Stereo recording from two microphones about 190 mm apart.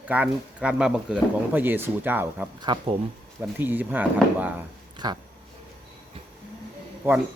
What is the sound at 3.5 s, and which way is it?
Speech, 10° right (ahead or behind).